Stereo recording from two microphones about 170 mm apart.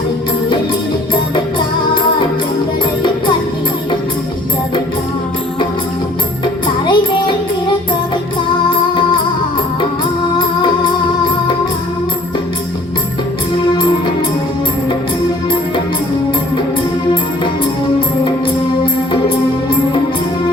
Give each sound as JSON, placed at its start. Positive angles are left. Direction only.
{"t": 6.4, "sound": "music", "side_deg": 25}